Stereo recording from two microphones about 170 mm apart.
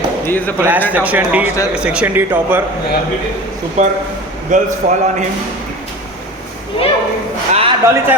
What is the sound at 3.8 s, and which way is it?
A man's voice, 40° right (ahead or behind).